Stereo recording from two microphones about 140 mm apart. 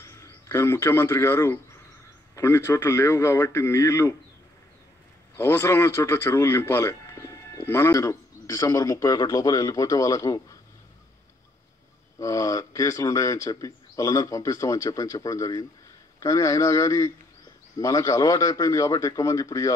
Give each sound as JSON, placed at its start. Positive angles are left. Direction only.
{"t": 0.0, "sound": "speech", "side_deg": 20}
{"t": 5.4, "sound": "speech", "side_deg": 20}
{"t": 12.2, "sound": "speech", "side_deg": 25}